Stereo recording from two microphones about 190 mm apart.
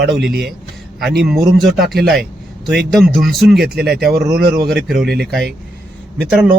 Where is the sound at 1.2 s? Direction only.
Centre (ahead or behind).